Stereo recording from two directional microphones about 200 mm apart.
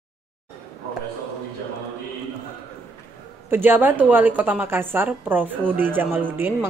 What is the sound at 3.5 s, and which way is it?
A woman's voice, 10° right (ahead or behind).